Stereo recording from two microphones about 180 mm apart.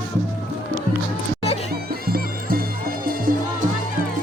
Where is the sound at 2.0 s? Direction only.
55° right (ahead or behind).